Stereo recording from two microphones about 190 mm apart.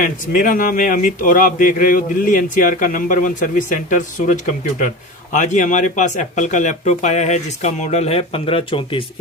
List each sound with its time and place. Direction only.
0.0 s speech: 45° left (ahead or behind); by 9.0 s 30° left (ahead or behind)